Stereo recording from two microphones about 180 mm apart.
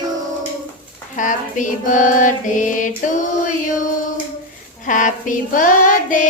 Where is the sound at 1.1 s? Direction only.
45° left (ahead or behind).